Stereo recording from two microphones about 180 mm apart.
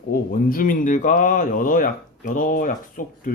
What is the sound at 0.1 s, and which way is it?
Speech, 50° left (ahead or behind).